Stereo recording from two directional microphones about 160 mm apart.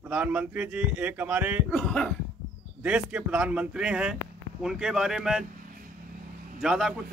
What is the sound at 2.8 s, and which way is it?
A man's voice, 10° right (ahead or behind).